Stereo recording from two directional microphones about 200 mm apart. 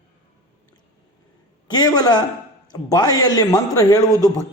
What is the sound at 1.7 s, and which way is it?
A man's voice, 20° left (ahead or behind).